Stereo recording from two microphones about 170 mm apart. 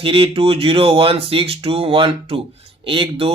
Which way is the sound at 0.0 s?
35° right (ahead or behind).